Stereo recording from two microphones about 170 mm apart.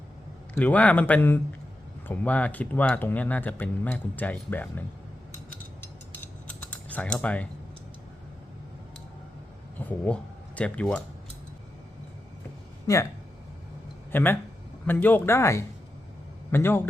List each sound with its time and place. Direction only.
0.5 s speech: 10° left (ahead or behind)
6.5 s typing: 10° left (ahead or behind)
9.7 s speech: 10° left (ahead or behind)
12.9 s speech: 20° left (ahead or behind)
14.1 s speech: 10° left (ahead or behind)